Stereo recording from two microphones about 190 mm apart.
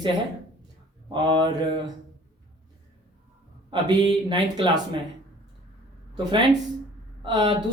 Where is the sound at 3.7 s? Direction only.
25° right (ahead or behind).